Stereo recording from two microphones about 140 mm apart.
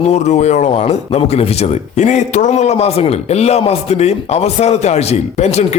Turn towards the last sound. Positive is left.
turn(degrees=50)  # may be behind; listen again after turning